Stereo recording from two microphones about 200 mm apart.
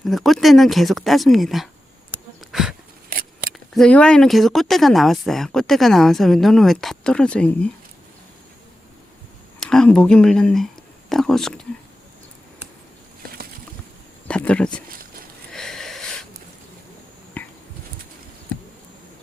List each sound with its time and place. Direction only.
0.0 s speech: centre (ahead or behind)
2.5 s a sound: centre (ahead or behind)
3.1 s scissors: 45° right (ahead or behind)
3.8 s speech: 5° left (ahead or behind)
9.6 s speech: 5° left (ahead or behind)
14.3 s speech: 5° left (ahead or behind)
15.5 s wheeze: 5° left (ahead or behind)
17.4 s a sound: 10° left (ahead or behind)